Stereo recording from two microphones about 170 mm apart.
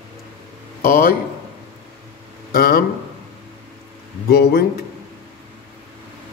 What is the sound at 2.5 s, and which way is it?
Speech, 60° left (ahead or behind).